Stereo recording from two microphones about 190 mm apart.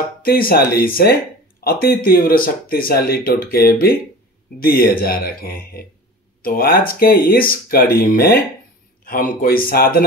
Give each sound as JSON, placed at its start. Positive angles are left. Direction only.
{"t": 0.2, "sound": "speech", "side_deg": 50}